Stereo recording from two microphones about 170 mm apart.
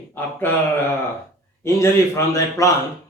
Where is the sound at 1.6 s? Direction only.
15° left (ahead or behind).